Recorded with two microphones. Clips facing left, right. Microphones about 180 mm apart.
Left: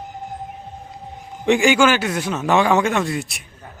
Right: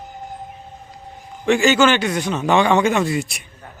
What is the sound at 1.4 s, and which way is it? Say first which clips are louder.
A man's voice: even; 15° left (ahead or behind).